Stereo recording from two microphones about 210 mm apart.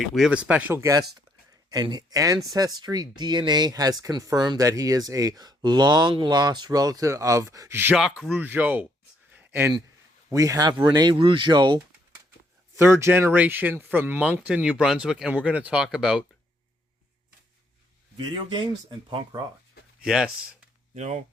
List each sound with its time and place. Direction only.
0.0 s speech: centre (ahead or behind)
9.3 s a sound: 10° right (ahead or behind)
10.2 s speech: 15° right (ahead or behind)
18.2 s speech: 20° right (ahead or behind)
20.1 s speech: 5° right (ahead or behind)
20.9 s speech: 35° right (ahead or behind)